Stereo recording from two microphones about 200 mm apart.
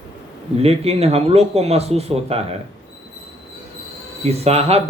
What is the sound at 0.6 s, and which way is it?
Speech, 30° right (ahead or behind).